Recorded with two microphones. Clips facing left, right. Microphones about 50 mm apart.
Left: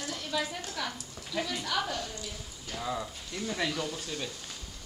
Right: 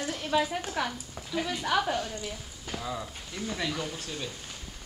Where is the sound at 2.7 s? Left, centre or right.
Centre.